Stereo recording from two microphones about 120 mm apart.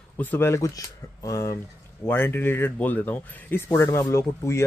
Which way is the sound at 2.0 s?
15° left (ahead or behind).